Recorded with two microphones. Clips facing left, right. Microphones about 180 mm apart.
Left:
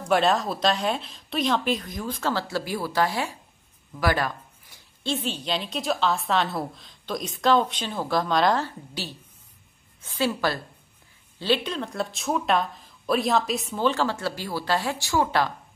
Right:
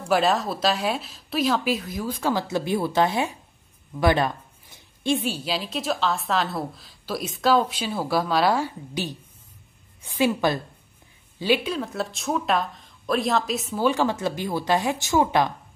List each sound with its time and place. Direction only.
0.0 s a woman's voice: 5° right (ahead or behind); by 15.5 s 20° right (ahead or behind)